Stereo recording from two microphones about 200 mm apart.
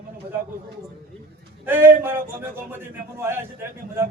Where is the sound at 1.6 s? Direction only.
10° right (ahead or behind).